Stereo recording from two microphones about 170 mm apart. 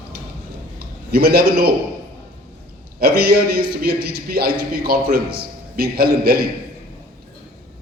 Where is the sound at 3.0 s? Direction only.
65° right (ahead or behind).